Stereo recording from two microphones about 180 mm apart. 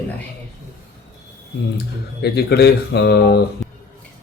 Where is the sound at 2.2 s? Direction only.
60° left (ahead or behind).